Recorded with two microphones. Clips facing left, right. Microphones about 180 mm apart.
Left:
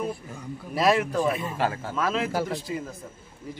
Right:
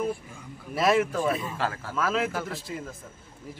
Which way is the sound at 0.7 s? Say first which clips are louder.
Left 1 dB; centre (ahead or behind).